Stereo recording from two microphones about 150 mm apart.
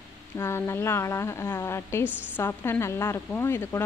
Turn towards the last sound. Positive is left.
turn(degrees=15)  # may be behind; listen again after turning